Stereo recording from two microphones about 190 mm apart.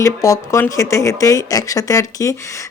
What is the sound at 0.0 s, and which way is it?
Speech, 15° left (ahead or behind).